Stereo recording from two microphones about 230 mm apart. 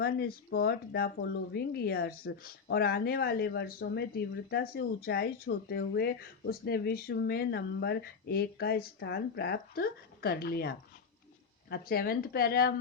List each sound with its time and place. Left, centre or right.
0.0 s speech: left